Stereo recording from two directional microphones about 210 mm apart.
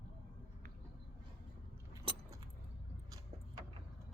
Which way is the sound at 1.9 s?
15° right (ahead or behind).